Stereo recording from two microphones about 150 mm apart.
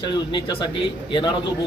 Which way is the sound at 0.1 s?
30° left (ahead or behind).